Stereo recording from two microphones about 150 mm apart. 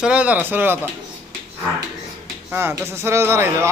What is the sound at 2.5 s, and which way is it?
Speech, 15° right (ahead or behind).